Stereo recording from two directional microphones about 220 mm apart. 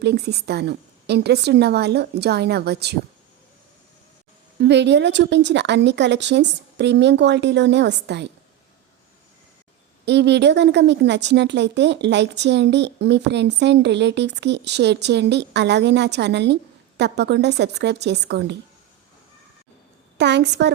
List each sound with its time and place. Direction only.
0.0 s a woman's voice: 50° right (ahead or behind)
4.6 s a woman's voice: 55° right (ahead or behind)
10.1 s a woman's voice: 50° right (ahead or behind)
20.1 s a woman's voice: 50° right (ahead or behind)